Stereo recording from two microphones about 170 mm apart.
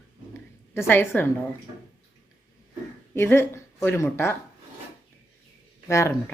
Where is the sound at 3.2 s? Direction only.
15° left (ahead or behind).